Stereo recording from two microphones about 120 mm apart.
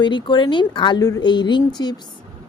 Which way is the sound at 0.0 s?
40° left (ahead or behind).